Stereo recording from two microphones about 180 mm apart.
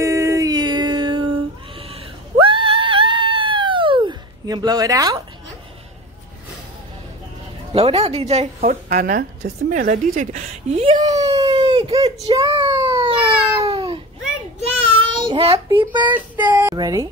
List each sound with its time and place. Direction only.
0.0 s music: 15° right (ahead or behind)
2.4 s screaming: 30° right (ahead or behind)
7.7 s a woman's voice: 35° right (ahead or behind)
11.1 s a sound: 20° right (ahead or behind)
12.3 s cat: 30° right (ahead or behind)
14.6 s child singing: 30° right (ahead or behind)
16.4 s speech: 20° right (ahead or behind)